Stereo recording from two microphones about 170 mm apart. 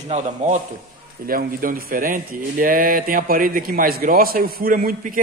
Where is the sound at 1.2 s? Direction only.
60° right (ahead or behind).